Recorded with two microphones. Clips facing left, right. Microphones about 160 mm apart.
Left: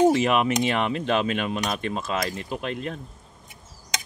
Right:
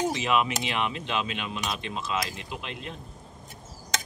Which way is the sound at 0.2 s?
50° left (ahead or behind).